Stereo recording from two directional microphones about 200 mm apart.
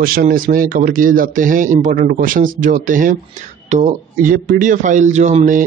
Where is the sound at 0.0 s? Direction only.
45° right (ahead or behind).